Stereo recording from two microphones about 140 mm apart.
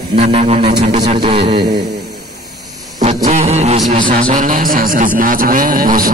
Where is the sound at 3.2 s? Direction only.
55° right (ahead or behind).